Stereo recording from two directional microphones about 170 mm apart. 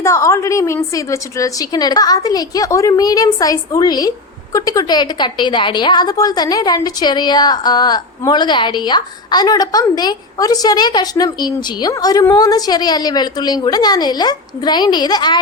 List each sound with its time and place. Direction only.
0.0 s a woman's voice: 15° left (ahead or behind)